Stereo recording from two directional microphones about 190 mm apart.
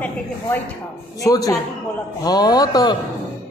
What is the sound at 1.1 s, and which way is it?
A man's voice, 20° left (ahead or behind).